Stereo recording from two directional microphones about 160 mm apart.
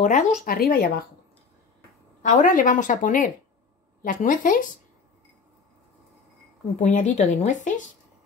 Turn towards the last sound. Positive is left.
turn(degrees=50)  # may be behind; listen again after turning